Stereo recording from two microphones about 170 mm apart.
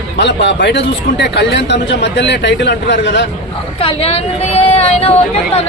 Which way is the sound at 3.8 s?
35° left (ahead or behind).